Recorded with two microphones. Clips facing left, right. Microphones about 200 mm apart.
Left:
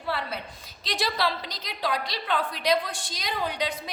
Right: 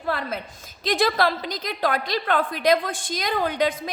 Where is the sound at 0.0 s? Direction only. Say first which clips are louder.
Right 4 dB; 50° right (ahead or behind).